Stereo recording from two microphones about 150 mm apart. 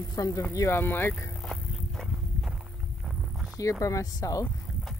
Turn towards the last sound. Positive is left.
turn(degrees=25)  # may be behind; listen again after turning